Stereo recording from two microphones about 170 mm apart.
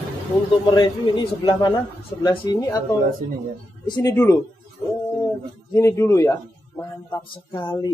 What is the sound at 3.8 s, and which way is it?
Speech, 20° left (ahead or behind).